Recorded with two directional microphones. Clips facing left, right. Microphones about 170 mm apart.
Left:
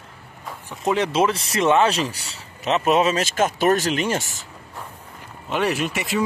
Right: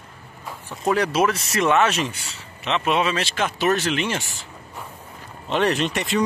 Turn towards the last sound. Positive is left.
turn(degrees=5)  # may be behind; listen again after turning